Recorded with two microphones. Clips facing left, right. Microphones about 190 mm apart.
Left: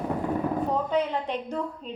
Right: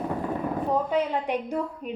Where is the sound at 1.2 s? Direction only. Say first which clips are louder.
Right 2 dB; 10° right (ahead or behind).